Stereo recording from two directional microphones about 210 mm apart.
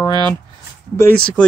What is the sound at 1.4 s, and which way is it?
Speech, 5° left (ahead or behind).